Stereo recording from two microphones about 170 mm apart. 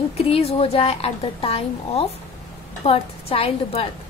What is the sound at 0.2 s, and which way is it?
A woman's voice, 35° left (ahead or behind).